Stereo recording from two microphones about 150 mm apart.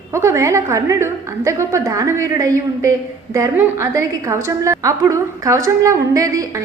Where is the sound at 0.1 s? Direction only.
20° right (ahead or behind).